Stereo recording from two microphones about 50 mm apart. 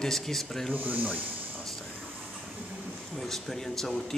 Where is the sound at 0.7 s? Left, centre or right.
Right.